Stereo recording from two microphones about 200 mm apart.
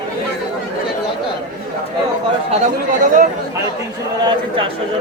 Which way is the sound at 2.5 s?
40° right (ahead or behind).